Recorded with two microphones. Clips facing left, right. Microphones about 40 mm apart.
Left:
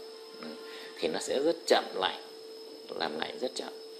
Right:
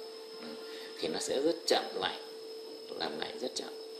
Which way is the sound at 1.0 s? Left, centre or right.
Left.